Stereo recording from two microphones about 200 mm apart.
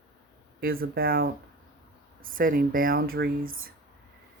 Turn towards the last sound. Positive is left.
turn(degrees=-45)  # may be behind; listen again after turning